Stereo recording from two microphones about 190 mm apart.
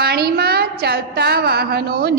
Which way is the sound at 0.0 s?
55° right (ahead or behind).